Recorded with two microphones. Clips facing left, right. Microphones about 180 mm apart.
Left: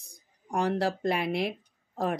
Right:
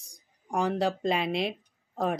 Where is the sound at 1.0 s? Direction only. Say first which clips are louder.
Even; 20° right (ahead or behind).